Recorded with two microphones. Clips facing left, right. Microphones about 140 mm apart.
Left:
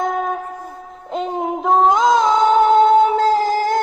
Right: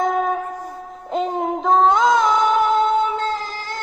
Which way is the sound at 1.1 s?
Centre (ahead or behind).